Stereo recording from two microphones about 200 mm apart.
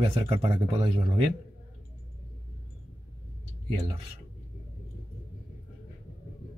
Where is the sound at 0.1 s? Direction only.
30° right (ahead or behind).